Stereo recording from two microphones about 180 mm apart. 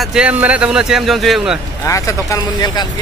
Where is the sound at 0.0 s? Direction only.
5° right (ahead or behind).